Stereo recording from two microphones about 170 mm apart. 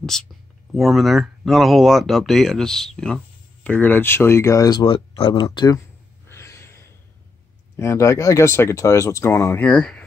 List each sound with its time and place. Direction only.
0.1 s speech: 5° left (ahead or behind); by 5.8 s 25° left (ahead or behind)
6.2 s a sound: 15° left (ahead or behind)
7.7 s speech: 15° left (ahead or behind)